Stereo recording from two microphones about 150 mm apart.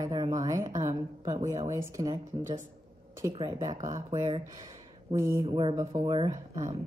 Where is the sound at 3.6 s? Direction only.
20° right (ahead or behind).